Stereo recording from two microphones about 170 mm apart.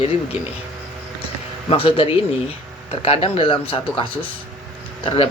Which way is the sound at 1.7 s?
35° left (ahead or behind).